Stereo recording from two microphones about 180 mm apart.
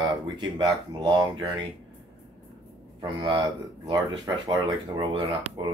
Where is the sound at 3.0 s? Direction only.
25° right (ahead or behind).